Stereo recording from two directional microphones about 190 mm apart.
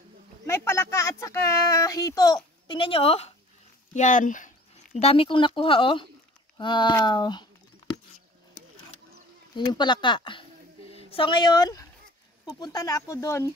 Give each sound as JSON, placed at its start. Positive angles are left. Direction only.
{"t": 0.5, "sound": "a sound", "side_deg": 15}
{"t": 3.9, "sound": "speech", "side_deg": 40}
{"t": 4.9, "sound": "speech", "side_deg": 30}
{"t": 9.7, "sound": "speech", "side_deg": 25}